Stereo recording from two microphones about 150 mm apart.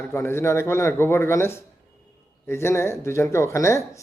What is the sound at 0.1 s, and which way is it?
Speech, 15° left (ahead or behind).